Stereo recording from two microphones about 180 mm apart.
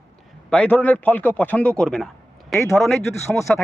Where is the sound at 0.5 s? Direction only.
5° left (ahead or behind).